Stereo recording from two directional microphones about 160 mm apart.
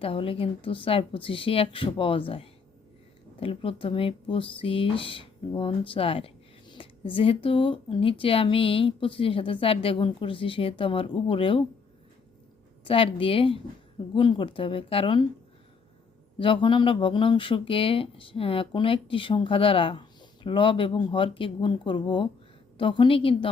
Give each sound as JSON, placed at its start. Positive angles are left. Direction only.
{"t": 0.0, "sound": "speech", "side_deg": 35}
{"t": 12.8, "sound": "speech", "side_deg": 35}
{"t": 16.4, "sound": "speech", "side_deg": 30}